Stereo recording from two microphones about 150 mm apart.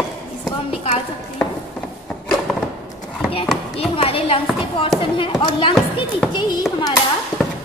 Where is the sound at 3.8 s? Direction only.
40° left (ahead or behind).